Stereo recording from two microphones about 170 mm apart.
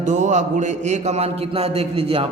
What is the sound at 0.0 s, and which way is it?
A man's voice, 45° right (ahead or behind).